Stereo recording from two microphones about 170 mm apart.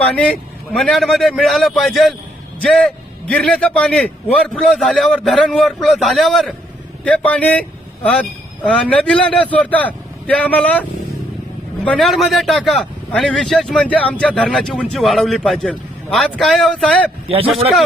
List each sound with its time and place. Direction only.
0.0 s a man's voice: 5° left (ahead or behind)
11.9 s a man's voice: centre (ahead or behind)
17.2 s a man's voice: 35° right (ahead or behind)